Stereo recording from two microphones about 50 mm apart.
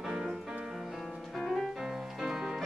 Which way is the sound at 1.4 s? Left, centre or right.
Centre.